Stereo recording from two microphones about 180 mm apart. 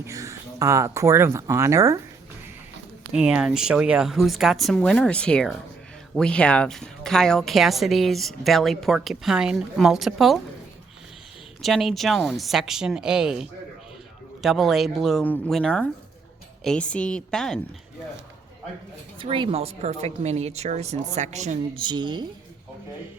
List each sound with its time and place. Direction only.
0.0 s speech: 15° right (ahead or behind)
3.1 s a woman's voice: 5° right (ahead or behind)
11.6 s a woman's voice: centre (ahead or behind)
19.2 s speech: 30° right (ahead or behind)
21.8 s a woman's voice: 25° right (ahead or behind)